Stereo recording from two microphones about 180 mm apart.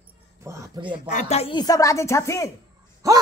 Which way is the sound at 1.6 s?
20° left (ahead or behind).